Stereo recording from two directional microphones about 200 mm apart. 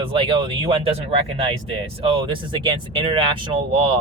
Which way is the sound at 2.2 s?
25° right (ahead or behind).